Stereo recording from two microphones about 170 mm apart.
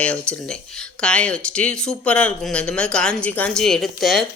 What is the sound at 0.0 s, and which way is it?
Speech, 5° left (ahead or behind).